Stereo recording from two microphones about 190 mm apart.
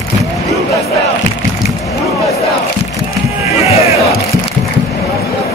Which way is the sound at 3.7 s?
35° left (ahead or behind).